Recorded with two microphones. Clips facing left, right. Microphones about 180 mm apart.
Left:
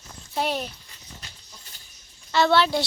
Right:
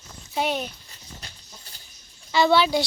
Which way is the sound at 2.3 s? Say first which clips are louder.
Right 1 dB; centre (ahead or behind).